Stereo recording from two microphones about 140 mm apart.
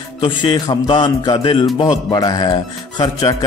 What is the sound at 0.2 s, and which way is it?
Speech, 35° left (ahead or behind).